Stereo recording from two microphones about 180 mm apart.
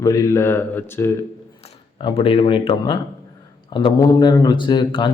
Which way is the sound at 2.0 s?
30° left (ahead or behind).